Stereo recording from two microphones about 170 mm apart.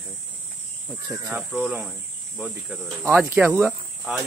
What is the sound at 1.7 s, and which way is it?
Speech, 5° right (ahead or behind).